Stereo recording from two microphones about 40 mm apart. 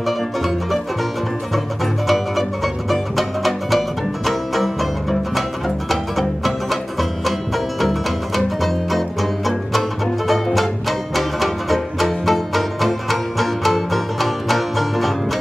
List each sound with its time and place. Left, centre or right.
2.0 s music: centre
5.9 s music: centre